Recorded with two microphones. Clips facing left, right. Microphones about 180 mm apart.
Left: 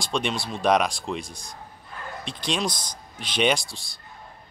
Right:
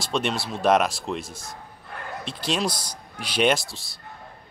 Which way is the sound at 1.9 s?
65° right (ahead or behind).